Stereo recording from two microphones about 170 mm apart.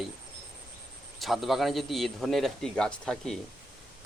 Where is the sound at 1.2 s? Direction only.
Centre (ahead or behind).